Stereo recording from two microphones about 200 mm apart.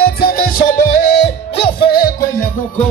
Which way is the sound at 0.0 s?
50° left (ahead or behind).